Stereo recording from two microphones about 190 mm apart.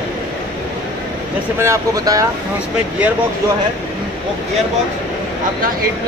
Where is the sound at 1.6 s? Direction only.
15° right (ahead or behind).